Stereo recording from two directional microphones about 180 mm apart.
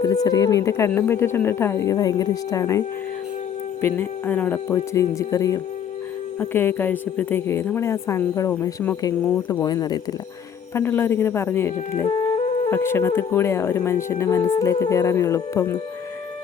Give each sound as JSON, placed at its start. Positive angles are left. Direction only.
{"t": 0.0, "sound": "a woman's voice", "side_deg": 20}